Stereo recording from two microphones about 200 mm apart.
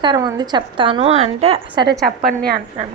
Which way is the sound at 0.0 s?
20° right (ahead or behind).